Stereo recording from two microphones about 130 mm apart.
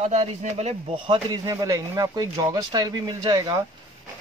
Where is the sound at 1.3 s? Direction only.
25° right (ahead or behind).